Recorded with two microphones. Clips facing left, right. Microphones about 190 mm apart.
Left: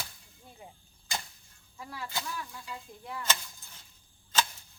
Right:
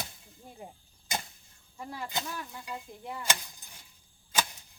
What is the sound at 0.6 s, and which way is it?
Arrow, 50° right (ahead or behind).